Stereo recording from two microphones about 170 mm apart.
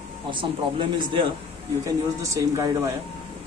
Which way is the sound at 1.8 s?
20° right (ahead or behind).